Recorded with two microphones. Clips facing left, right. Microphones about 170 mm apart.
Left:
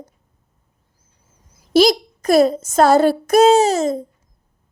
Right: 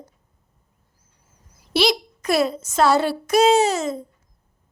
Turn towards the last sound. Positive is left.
turn(degrees=40)  # may be behind; listen again after turning